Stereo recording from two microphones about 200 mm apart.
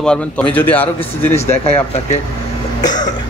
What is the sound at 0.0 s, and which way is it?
Speech, 5° left (ahead or behind).